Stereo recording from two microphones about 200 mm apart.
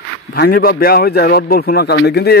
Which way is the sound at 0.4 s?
50° left (ahead or behind).